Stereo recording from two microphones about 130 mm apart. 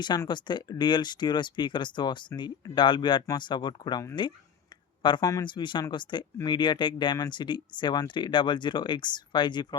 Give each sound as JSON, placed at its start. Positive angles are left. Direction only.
{"t": 0.0, "sound": "speech", "side_deg": 35}
{"t": 5.0, "sound": "speech", "side_deg": 30}